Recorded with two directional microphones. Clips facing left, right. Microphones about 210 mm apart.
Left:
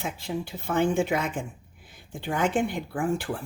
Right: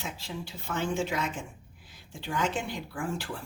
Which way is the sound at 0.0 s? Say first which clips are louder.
Left 7 dB; 55° left (ahead or behind).